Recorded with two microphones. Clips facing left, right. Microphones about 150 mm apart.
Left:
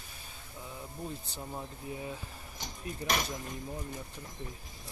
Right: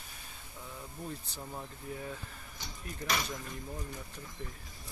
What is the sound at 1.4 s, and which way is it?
Speech, 10° left (ahead or behind).